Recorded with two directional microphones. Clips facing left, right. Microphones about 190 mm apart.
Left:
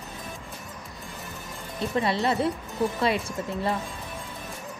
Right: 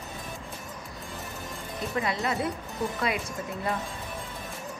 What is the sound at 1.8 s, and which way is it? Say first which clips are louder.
A woman's voice: left 4 dB; 30° left (ahead or behind).